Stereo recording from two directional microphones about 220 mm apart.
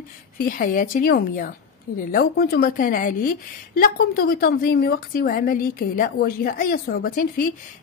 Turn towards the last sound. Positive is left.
turn(degrees=40)  # may be behind; listen again after turning